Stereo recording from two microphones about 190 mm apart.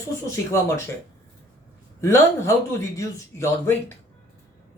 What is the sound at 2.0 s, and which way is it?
Speech, 15° left (ahead or behind).